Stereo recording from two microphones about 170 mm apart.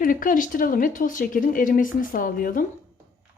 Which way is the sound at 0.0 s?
55° left (ahead or behind).